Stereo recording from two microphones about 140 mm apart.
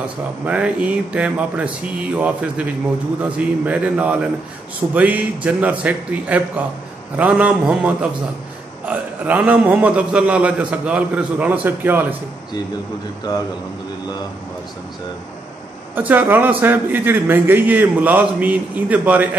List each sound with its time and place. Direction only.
0.5 s a man's voice: 10° right (ahead or behind)
13.3 s a man's voice: 30° left (ahead or behind)
15.9 s a man's voice: 10° right (ahead or behind)